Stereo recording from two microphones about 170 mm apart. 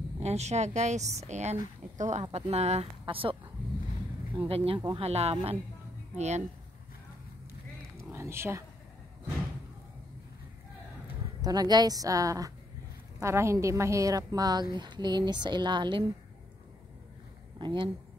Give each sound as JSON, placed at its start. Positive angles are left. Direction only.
{"t": 0.2, "sound": "speech", "side_deg": -40}
{"t": 4.5, "sound": "speech", "side_deg": -35}
{"t": 8.0, "sound": "a sound", "side_deg": -15}
{"t": 11.4, "sound": "a woman's voice", "side_deg": -25}
{"t": 17.6, "sound": "speech", "side_deg": -25}